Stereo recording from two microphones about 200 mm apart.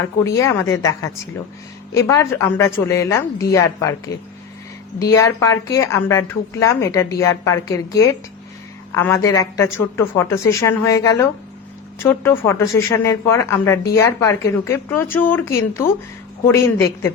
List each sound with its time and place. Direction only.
0.3 s speech: 15° left (ahead or behind)
8.9 s speech: 10° left (ahead or behind)